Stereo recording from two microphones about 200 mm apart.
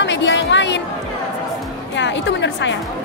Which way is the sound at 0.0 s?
65° left (ahead or behind).